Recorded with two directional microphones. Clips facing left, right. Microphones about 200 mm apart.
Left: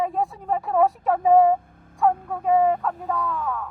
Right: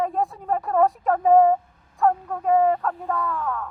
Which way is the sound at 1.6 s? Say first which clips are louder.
Left 5 dB; 55° left (ahead or behind).